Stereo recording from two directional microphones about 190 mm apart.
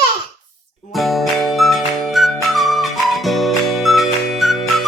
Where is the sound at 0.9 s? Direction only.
Centre (ahead or behind).